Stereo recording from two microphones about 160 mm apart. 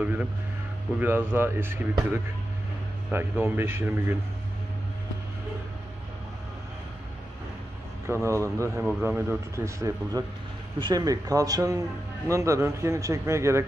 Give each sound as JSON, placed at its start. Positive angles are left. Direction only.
{"t": 0.0, "sound": "music", "side_deg": -10}
{"t": 0.9, "sound": "speech", "side_deg": -15}
{"t": 8.1, "sound": "speech", "side_deg": -20}